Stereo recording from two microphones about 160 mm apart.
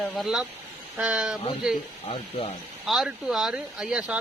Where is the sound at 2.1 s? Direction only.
35° left (ahead or behind).